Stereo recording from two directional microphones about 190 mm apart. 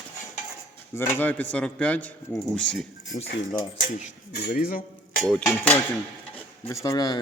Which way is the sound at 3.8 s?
40° left (ahead or behind).